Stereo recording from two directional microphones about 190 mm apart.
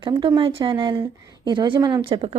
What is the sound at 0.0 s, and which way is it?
Speech, 25° right (ahead or behind).